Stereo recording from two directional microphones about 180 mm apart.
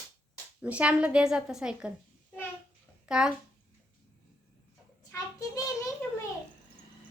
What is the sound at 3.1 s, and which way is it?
Speech, 5° right (ahead or behind).